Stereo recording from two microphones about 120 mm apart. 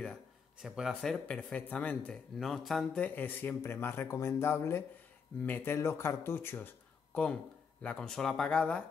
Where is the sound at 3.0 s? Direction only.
15° left (ahead or behind).